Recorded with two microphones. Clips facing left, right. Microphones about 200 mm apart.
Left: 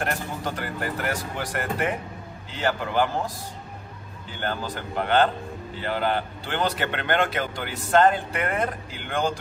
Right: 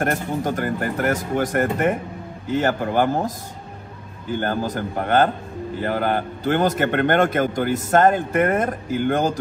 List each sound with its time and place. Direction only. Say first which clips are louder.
0.0 s a man's voice: right 6 dB; 45° right (ahead or behind)